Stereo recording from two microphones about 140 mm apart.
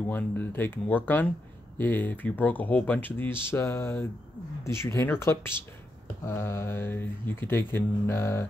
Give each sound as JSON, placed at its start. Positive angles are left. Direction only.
{"t": 0.0, "sound": "speech", "side_deg": 15}